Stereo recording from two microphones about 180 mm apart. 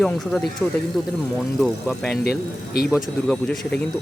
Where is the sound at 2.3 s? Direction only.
60° left (ahead or behind).